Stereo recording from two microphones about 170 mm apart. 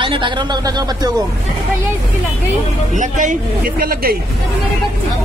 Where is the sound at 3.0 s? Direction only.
45° right (ahead or behind); by 4.2 s 60° right (ahead or behind).